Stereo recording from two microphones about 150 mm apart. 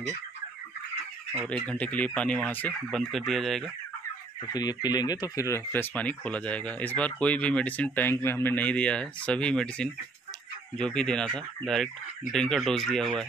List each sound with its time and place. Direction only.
1.5 s speech: 10° left (ahead or behind)
4.5 s speech: 25° left (ahead or behind); by 13.2 s 5° left (ahead or behind)